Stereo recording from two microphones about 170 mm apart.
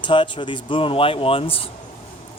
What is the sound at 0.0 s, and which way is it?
Speech, 30° left (ahead or behind).